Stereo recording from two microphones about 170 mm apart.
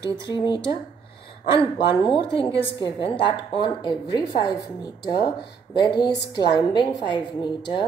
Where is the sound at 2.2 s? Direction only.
30° left (ahead or behind).